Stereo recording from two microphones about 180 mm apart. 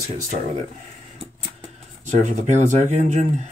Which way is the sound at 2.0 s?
40° right (ahead or behind).